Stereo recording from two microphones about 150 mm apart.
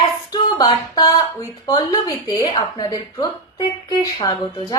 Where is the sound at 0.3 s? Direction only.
25° left (ahead or behind).